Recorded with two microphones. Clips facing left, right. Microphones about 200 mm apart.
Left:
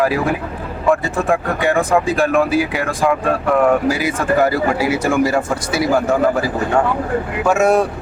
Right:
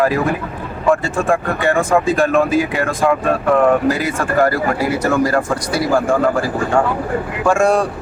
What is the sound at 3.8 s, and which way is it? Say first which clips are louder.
Speech: even; 10° left (ahead or behind).